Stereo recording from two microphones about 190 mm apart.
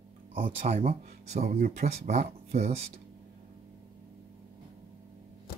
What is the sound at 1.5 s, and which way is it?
Speech, 50° right (ahead or behind).